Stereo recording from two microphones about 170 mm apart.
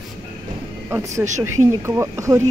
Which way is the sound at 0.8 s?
15° right (ahead or behind).